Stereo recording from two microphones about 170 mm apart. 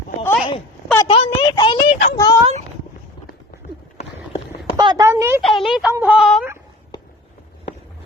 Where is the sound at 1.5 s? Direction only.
30° left (ahead or behind).